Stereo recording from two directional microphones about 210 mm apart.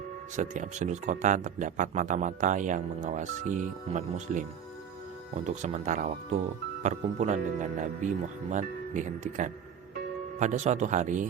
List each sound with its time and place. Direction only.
0.3 s speech: 35° right (ahead or behind)
5.6 s speech: 35° right (ahead or behind)